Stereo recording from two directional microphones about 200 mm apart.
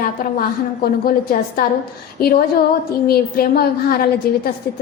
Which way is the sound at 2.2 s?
50° left (ahead or behind).